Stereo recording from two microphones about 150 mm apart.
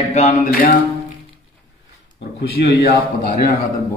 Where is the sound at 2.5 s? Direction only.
90° left.